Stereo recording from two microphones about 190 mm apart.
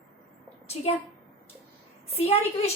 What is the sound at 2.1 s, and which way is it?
Speech, 30° left (ahead or behind).